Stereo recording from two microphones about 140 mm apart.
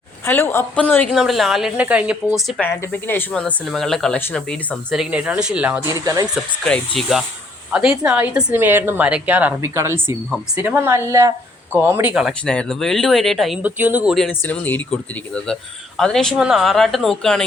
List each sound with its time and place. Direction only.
0.3 s speech: 15° left (ahead or behind)
1.1 s a woman's voice: centre (ahead or behind)
2.6 s a woman's voice: 15° left (ahead or behind)
5.1 s a woman's voice: 5° right (ahead or behind)
5.9 s a woman's voice: 25° right (ahead or behind)
6.7 s a woman's voice: 5° left (ahead or behind)
12.5 s a woman's voice: 5° left (ahead or behind)
13.6 s a woman's voice: 10° right (ahead or behind)
14.3 s a woman's voice: 10° left (ahead or behind)